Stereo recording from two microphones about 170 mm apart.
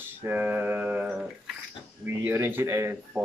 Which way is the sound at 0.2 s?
10° right (ahead or behind).